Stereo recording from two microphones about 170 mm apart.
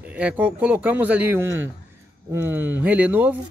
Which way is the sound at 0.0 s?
10° right (ahead or behind).